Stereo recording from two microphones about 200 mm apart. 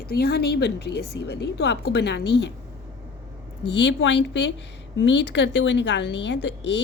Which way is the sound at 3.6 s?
60° left (ahead or behind).